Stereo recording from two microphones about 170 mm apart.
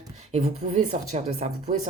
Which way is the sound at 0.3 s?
40° right (ahead or behind).